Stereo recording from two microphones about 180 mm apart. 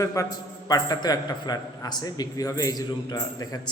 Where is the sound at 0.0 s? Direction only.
15° left (ahead or behind).